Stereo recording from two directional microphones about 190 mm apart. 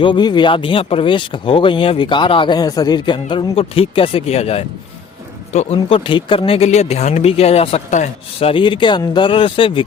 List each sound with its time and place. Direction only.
0.0 s speech: 25° left (ahead or behind)